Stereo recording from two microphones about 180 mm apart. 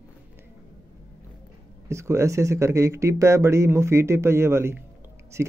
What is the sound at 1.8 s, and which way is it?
Speech, 15° right (ahead or behind).